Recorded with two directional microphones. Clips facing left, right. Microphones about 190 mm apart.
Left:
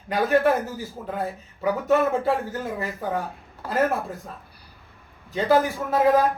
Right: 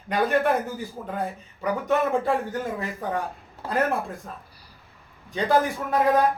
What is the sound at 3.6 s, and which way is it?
Speech, 25° right (ahead or behind).